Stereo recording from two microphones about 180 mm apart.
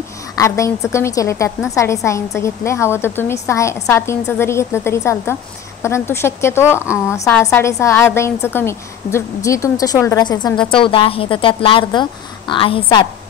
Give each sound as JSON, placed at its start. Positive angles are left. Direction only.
{"t": 0.4, "sound": "a woman's voice", "side_deg": 15}